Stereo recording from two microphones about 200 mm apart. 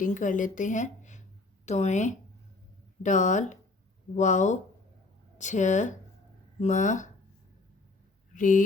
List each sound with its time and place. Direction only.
0.0 s a woman's voice: 40° left (ahead or behind)
8.3 s speech: 40° left (ahead or behind)